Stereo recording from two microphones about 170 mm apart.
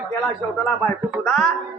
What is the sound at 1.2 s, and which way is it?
Speech, centre (ahead or behind).